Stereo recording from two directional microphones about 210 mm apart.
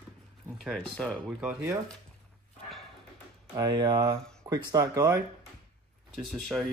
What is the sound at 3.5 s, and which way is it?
Speech, 20° right (ahead or behind).